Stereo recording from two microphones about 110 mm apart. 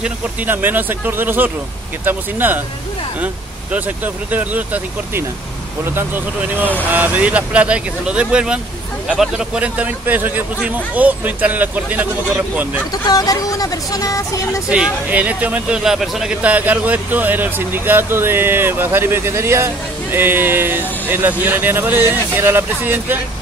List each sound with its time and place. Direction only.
0.0 s speech: 15° right (ahead or behind)
3.7 s speech: 15° right (ahead or behind)
12.9 s speech: 35° left (ahead or behind)
14.7 s speech: 10° right (ahead or behind)
15.8 s a man's voice: 5° right (ahead or behind); by 23.1 s 20° right (ahead or behind)